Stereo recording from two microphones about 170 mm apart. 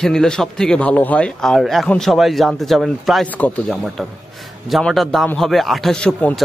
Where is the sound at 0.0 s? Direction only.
5° left (ahead or behind).